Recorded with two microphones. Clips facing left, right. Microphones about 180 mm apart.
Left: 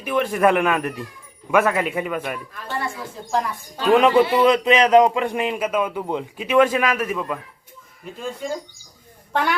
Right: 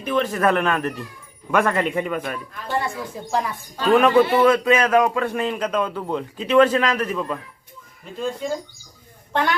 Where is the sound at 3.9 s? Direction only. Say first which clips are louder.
Even; 15° left (ahead or behind).